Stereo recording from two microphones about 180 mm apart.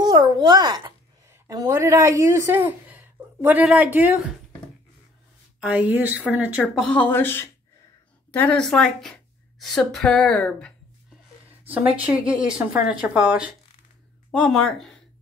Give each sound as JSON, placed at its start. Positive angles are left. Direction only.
{"t": 0.0, "sound": "a child's voice", "side_deg": -25}
{"t": 5.6, "sound": "a woman's voice", "side_deg": -5}
{"t": 11.4, "sound": "a woman's voice", "side_deg": -10}
{"t": 14.3, "sound": "speech", "side_deg": 5}